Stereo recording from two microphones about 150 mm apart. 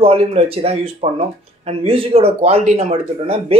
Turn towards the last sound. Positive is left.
turn(degrees=-45)  # may be behind; listen again after turning